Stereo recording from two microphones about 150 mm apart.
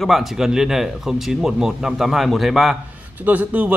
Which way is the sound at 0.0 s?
Centre (ahead or behind).